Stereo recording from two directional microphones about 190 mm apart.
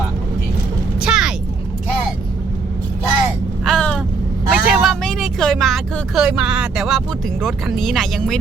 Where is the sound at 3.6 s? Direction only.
5° left (ahead or behind).